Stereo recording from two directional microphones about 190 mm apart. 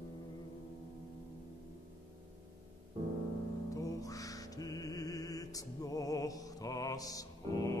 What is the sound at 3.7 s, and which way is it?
Music, 20° left (ahead or behind).